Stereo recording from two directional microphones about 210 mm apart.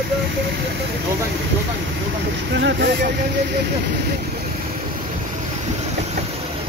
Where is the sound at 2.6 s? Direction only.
55° right (ahead or behind).